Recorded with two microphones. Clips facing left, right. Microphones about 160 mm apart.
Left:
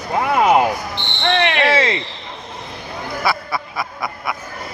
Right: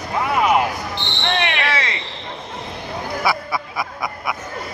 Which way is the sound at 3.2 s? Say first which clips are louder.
Left 1 dB; 15° right (ahead or behind).